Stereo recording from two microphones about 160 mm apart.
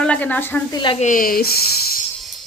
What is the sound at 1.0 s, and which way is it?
Speech, 55° left (ahead or behind).